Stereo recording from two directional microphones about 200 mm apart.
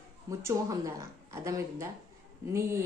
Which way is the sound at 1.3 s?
15° right (ahead or behind).